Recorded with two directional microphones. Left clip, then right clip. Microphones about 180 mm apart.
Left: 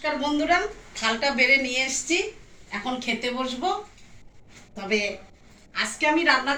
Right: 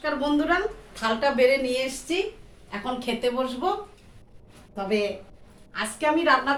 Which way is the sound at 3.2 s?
25° right (ahead or behind).